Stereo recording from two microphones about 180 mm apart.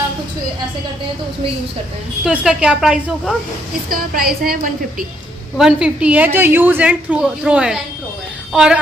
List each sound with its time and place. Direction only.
2.2 s a woman's voice: 5° right (ahead or behind)
3.9 s a woman's voice: 55° right (ahead or behind)
5.6 s a woman's voice: 5° right (ahead or behind)